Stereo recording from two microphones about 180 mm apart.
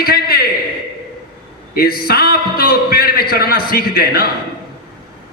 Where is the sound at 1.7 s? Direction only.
55° left (ahead or behind).